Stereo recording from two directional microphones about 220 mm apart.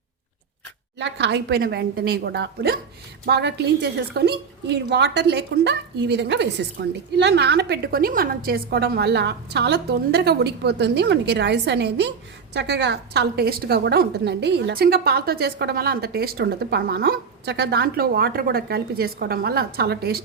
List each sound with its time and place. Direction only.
0.9 s a woman's voice: 55° right (ahead or behind)